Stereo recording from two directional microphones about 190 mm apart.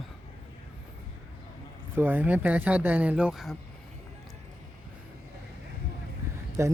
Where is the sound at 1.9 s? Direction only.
10° right (ahead or behind).